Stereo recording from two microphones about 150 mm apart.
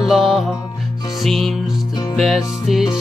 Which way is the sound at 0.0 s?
Centre (ahead or behind).